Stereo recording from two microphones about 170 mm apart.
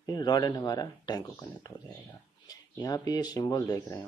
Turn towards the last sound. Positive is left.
turn(degrees=20)  # may be behind; listen again after turning